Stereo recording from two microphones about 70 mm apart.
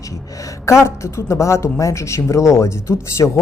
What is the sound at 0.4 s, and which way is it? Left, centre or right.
A woman's voice, left.